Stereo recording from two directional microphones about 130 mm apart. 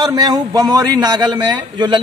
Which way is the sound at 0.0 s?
30° right (ahead or behind).